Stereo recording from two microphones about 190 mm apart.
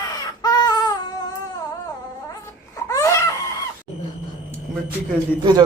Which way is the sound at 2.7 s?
15° left (ahead or behind).